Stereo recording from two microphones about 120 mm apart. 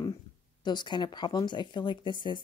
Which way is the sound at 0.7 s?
40° left (ahead or behind).